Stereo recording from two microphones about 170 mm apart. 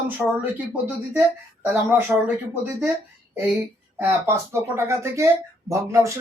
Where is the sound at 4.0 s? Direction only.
15° right (ahead or behind).